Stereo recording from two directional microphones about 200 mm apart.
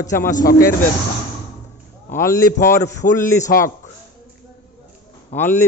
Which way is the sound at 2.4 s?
40° left (ahead or behind).